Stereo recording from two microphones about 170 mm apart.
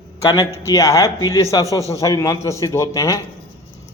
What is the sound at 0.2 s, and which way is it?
A man's voice, 20° left (ahead or behind).